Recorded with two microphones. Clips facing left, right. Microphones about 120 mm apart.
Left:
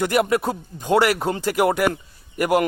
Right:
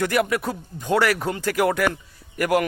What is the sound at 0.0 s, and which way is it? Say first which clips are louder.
A man's voice: left 2 dB; 25° left (ahead or behind).